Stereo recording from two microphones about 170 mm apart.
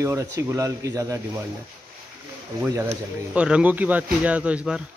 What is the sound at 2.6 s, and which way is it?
Speech, 10° right (ahead or behind).